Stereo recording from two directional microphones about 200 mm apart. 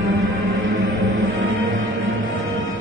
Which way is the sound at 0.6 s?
80° right.